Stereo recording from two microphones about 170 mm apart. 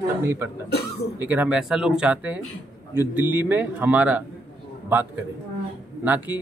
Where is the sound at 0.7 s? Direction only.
75° left (ahead or behind).